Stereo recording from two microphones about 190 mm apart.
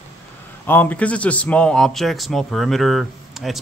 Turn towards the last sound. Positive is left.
turn(degrees=0)  # may be behind; listen again after turning